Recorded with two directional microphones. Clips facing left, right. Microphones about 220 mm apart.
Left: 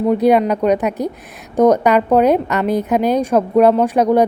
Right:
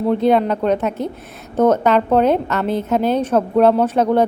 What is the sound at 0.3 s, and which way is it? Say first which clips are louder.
A woman's voice: left 2 dB; 15° left (ahead or behind).